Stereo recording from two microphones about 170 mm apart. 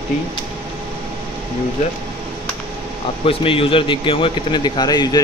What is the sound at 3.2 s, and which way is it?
A man's voice, 30° left (ahead or behind).